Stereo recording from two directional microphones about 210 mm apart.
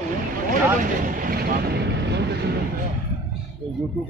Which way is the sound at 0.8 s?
40° right (ahead or behind).